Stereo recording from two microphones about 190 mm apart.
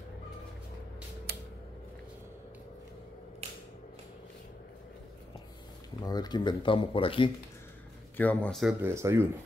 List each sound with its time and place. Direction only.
1.3 s a sound: 60° right (ahead or behind)
6.0 s speech: 20° left (ahead or behind)
8.2 s speech: 10° left (ahead or behind)
8.8 s speech: 15° right (ahead or behind)